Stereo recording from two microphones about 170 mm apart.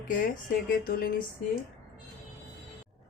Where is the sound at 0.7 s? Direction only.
60° left (ahead or behind).